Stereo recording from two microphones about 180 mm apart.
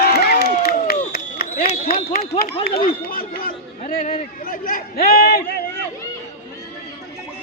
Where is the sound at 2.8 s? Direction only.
55° left (ahead or behind).